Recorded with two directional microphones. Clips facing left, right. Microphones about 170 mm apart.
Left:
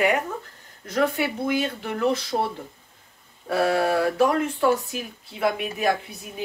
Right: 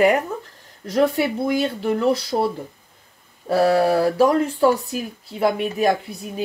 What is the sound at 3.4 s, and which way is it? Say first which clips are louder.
Speech: right 5 dB; 35° right (ahead or behind).